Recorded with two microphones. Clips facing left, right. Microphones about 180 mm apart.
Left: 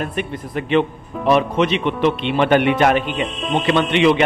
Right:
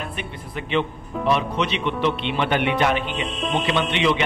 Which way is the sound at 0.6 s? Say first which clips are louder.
Left 6 dB; 50° left (ahead or behind).